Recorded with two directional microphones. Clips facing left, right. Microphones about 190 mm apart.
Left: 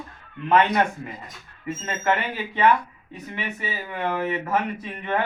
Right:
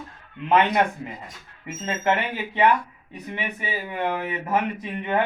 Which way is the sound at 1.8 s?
20° right (ahead or behind).